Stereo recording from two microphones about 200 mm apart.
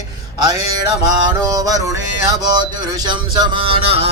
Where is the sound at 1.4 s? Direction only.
20° right (ahead or behind).